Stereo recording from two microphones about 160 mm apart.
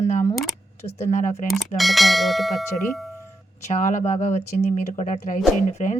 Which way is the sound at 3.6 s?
50° left (ahead or behind).